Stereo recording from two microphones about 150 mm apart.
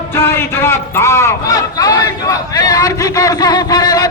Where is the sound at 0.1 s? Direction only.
15° left (ahead or behind).